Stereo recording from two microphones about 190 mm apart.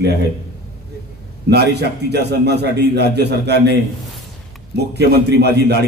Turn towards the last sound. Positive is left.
turn(degrees=-60)  # may be behind; listen again after turning